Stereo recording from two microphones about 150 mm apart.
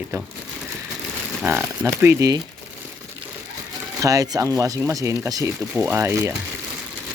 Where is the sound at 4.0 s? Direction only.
20° right (ahead or behind).